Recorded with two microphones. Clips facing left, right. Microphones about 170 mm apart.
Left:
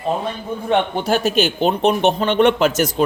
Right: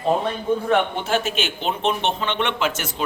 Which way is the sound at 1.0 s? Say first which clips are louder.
Left 6 dB; 40° left (ahead or behind).